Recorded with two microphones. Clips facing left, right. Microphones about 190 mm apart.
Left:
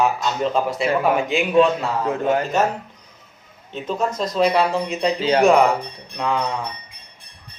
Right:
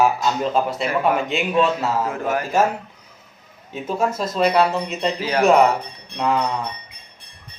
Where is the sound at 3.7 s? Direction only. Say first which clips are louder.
Right 1 dB; 10° right (ahead or behind).